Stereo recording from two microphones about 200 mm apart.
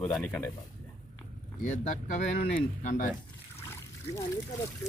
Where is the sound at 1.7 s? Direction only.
40° left (ahead or behind).